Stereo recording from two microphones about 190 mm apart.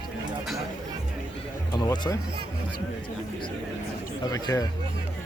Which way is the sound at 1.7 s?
20° left (ahead or behind).